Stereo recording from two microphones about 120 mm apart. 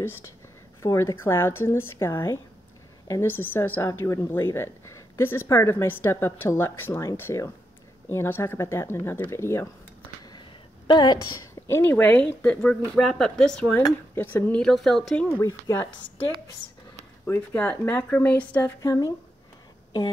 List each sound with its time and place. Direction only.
0.8 s a woman's voice: 25° left (ahead or behind)
10.9 s a woman's voice: 40° left (ahead or behind)
11.6 s speech: 20° left (ahead or behind)
14.6 s speech: centre (ahead or behind)
15.2 s speech: 20° left (ahead or behind)
17.3 s speech: 15° left (ahead or behind)
18.8 s a woman's voice: 30° left (ahead or behind)